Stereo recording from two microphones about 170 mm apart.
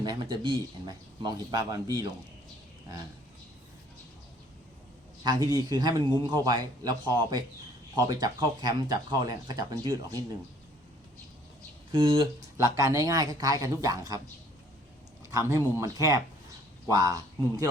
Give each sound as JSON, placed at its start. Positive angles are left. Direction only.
{"t": 0.0, "sound": "speech", "side_deg": -25}
{"t": 5.2, "sound": "speech", "side_deg": -20}
{"t": 11.9, "sound": "speech", "side_deg": -30}
{"t": 12.6, "sound": "speech", "side_deg": -20}
{"t": 15.3, "sound": "speech", "side_deg": -20}